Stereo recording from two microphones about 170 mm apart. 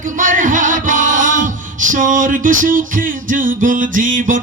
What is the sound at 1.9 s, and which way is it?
Music, 50° right (ahead or behind).